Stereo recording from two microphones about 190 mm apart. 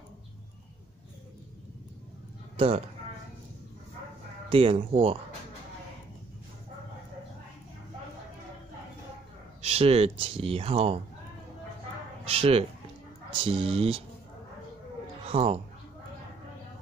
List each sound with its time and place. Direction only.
2.5 s speech: 30° right (ahead or behind)
4.5 s speech: 30° right (ahead or behind)
9.6 s speech: 35° right (ahead or behind)
12.3 s speech: 30° right (ahead or behind)
15.2 s a woman's voice: 30° right (ahead or behind)